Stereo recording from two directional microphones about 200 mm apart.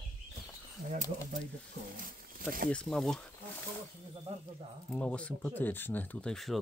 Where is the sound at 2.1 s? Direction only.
45° right (ahead or behind).